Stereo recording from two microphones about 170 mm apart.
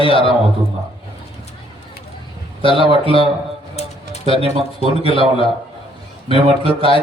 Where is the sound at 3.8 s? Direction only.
35° left (ahead or behind).